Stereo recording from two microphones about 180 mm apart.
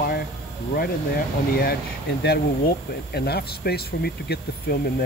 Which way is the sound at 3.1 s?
60° left (ahead or behind).